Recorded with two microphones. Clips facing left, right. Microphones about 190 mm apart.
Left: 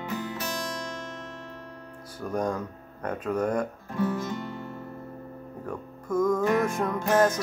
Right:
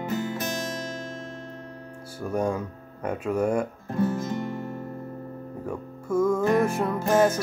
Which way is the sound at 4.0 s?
50° right (ahead or behind).